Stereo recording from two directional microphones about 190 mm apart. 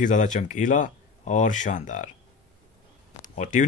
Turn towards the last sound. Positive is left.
turn(degrees=40)  # may be behind; listen again after turning